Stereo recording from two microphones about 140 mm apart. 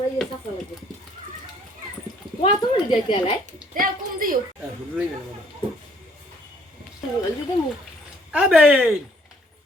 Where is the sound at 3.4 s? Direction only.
85° right.